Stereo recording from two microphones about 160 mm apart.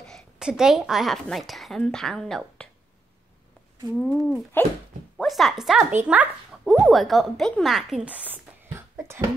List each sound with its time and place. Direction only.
0.0 s a woman's voice: centre (ahead or behind)
4.3 s speech: 15° left (ahead or behind)
5.1 s speech: centre (ahead or behind)
8.9 s a sound: 15° right (ahead or behind)